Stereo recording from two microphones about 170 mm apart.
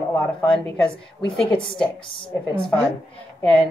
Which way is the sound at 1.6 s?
30° left (ahead or behind).